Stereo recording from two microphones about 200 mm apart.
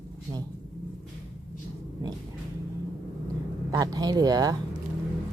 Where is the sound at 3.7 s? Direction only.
20° right (ahead or behind).